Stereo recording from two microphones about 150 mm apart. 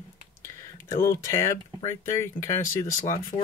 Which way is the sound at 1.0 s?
20° left (ahead or behind).